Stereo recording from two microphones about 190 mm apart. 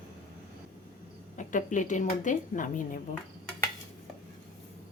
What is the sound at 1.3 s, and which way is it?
Speech, 40° left (ahead or behind).